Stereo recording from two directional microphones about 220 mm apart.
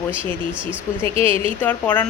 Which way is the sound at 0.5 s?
5° right (ahead or behind).